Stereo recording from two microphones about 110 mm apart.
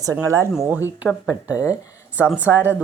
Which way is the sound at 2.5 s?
10° left (ahead or behind).